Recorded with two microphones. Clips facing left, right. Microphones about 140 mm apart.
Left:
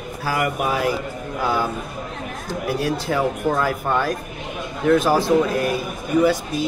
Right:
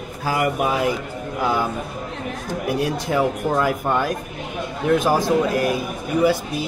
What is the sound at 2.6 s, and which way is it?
Speech, 15° right (ahead or behind).